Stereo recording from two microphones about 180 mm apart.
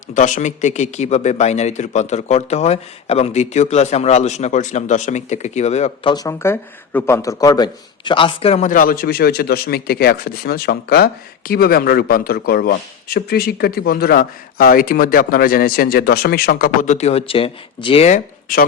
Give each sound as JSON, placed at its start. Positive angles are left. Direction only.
{"t": 0.1, "sound": "speech", "side_deg": 45}